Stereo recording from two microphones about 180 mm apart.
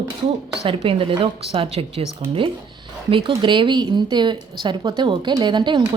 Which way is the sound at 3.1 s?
30° right (ahead or behind).